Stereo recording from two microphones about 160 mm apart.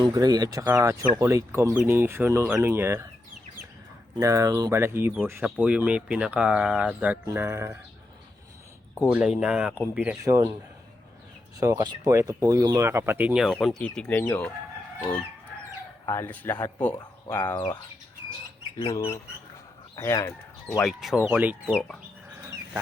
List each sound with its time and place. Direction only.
0.0 s speech: 25° right (ahead or behind)
4.2 s speech: 20° right (ahead or behind)
9.0 s speech: 5° right (ahead or behind)
10.2 s speech: 20° right (ahead or behind)
11.6 s speech: 25° right (ahead or behind); by 14.5 s 10° left (ahead or behind)
16.0 s speech: 15° left (ahead or behind)
16.6 s speech: 25° left (ahead or behind)
18.9 s speech: 20° left (ahead or behind)
20.8 s speech: centre (ahead or behind)